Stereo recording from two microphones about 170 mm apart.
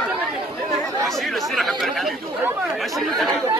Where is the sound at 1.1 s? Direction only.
Centre (ahead or behind).